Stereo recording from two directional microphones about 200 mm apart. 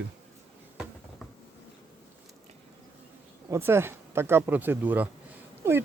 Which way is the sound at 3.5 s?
10° right (ahead or behind).